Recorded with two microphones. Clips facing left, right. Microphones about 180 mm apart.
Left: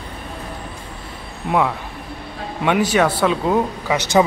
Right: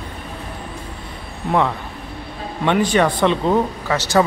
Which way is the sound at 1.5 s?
5° left (ahead or behind).